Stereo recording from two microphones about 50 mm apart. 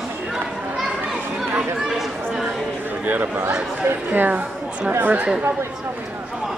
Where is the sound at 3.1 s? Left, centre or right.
Right.